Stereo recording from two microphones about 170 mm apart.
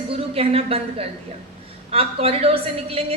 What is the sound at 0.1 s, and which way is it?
A woman's voice, 35° right (ahead or behind).